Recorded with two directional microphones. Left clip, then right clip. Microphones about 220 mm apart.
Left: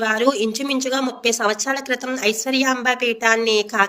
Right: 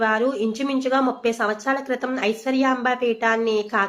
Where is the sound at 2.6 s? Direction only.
50° left (ahead or behind).